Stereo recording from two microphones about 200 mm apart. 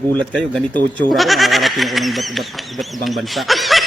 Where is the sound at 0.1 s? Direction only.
5° left (ahead or behind).